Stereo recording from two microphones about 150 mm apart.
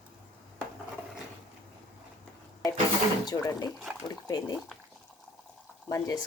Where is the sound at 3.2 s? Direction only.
25° left (ahead or behind).